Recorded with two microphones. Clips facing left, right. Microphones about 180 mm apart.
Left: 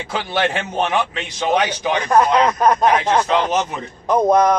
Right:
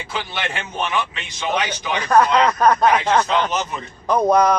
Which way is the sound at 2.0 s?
20° left (ahead or behind).